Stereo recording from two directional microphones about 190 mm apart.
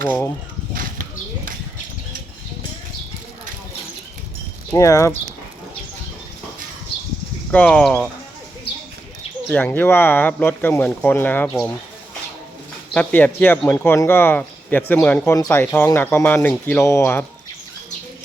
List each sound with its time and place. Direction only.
0.7 s a sound: 45° right (ahead or behind)
4.7 s speech: 15° left (ahead or behind)
7.5 s speech: 5° left (ahead or behind)
9.5 s speech: 10° left (ahead or behind)
12.9 s speech: 10° left (ahead or behind)